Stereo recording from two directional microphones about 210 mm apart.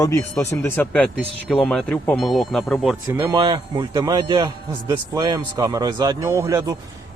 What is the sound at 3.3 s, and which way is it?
A man's voice, 20° right (ahead or behind).